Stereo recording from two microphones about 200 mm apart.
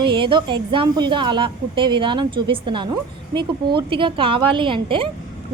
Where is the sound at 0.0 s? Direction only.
25° right (ahead or behind).